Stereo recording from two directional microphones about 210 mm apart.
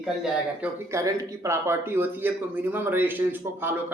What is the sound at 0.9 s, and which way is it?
Speech, 15° right (ahead or behind).